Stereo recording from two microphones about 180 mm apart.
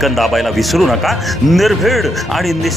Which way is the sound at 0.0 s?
Centre (ahead or behind).